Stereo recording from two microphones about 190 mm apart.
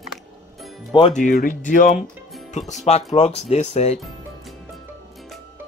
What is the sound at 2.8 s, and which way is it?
Speech, 35° left (ahead or behind).